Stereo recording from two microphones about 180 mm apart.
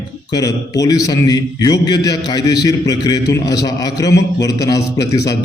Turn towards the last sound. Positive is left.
turn(degrees=20)  # may be behind; listen again after turning